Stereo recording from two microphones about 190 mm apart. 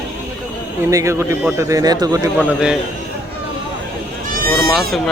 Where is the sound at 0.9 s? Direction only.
15° right (ahead or behind).